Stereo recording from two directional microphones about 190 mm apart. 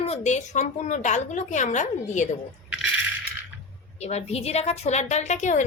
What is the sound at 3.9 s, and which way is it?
A woman's voice, 35° left (ahead or behind).